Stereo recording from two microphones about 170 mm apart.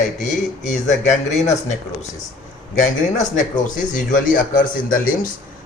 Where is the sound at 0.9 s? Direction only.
45° left (ahead or behind).